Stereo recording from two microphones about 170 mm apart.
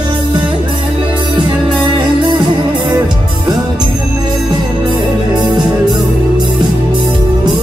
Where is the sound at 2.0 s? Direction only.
25° right (ahead or behind).